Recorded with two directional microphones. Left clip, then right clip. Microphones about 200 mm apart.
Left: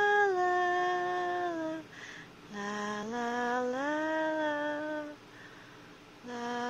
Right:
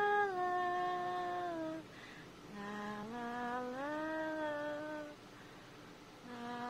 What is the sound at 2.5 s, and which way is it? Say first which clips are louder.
Mantra: left 9 dB; 30° left (ahead or behind).